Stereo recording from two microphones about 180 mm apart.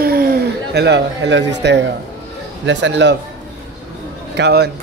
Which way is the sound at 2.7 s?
85° right.